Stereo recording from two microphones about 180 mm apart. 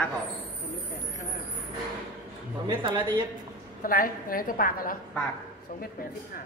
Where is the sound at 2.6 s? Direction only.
25° right (ahead or behind).